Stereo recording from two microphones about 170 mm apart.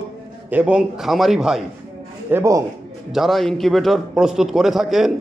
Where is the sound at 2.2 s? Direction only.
15° right (ahead or behind).